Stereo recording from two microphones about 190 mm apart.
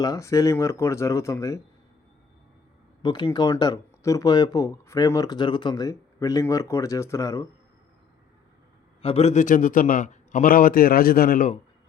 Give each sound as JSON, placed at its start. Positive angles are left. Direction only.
{"t": 0.0, "sound": "speech", "side_deg": 15}
{"t": 3.0, "sound": "speech", "side_deg": 20}
{"t": 9.0, "sound": "a man's voice", "side_deg": 30}